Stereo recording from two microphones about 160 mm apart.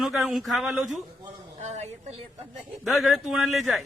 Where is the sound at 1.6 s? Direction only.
45° right (ahead or behind).